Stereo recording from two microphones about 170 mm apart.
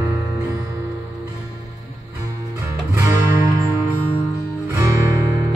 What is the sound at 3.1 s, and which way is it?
Music, 20° right (ahead or behind).